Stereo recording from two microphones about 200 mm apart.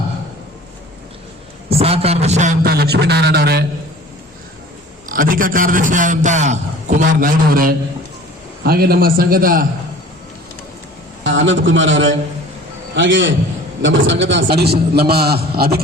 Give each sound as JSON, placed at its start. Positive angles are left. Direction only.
{"t": 1.8, "sound": "a man's voice", "side_deg": -30}
{"t": 5.0, "sound": "a man's voice", "side_deg": -45}
{"t": 11.2, "sound": "a man's voice", "side_deg": -70}
{"t": 14.4, "sound": "a man's voice", "side_deg": -55}